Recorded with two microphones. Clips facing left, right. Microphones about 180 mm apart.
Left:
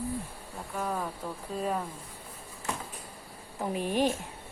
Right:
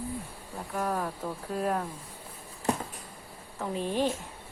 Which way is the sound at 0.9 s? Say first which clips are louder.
Right 2 dB; 5° right (ahead or behind).